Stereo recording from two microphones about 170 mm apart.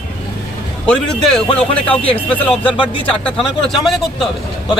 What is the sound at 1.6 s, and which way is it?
A man's voice, 5° left (ahead or behind).